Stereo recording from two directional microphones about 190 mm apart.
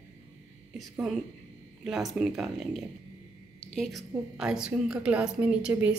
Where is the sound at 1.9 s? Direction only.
Centre (ahead or behind).